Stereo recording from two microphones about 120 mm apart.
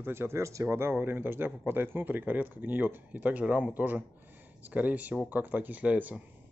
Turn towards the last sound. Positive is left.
turn(degrees=-10)  # may be behind; listen again after turning